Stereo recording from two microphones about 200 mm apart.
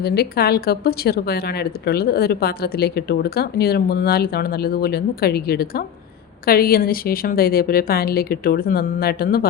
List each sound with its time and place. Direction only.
0.0 s speech: 50° left (ahead or behind)